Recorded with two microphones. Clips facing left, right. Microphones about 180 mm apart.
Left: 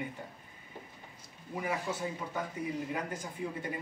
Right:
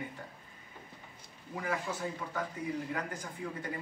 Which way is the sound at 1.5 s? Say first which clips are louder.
Left 1 dB; 20° left (ahead or behind).